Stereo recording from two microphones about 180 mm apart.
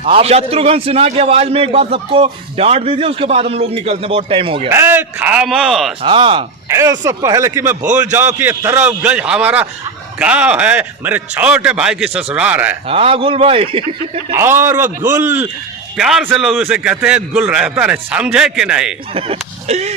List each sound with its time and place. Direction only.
0.0 s a man's voice: 35° right (ahead or behind)
4.7 s a man's voice: 15° right (ahead or behind)
6.0 s speech: 30° right (ahead or behind)
6.7 s a man's voice: 15° right (ahead or behind)
12.9 s a man's voice: 30° right (ahead or behind)
14.3 s a man's voice: 15° right (ahead or behind)
14.8 s a man's voice: 45° right (ahead or behind)
16.0 s a man's voice: 5° right (ahead or behind)
19.1 s speech: 35° right (ahead or behind)